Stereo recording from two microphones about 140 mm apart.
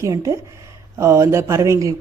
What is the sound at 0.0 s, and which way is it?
Speech, 20° right (ahead or behind).